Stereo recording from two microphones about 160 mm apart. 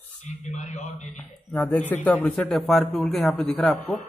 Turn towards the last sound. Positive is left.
turn(degrees=5)  # may be behind; listen again after turning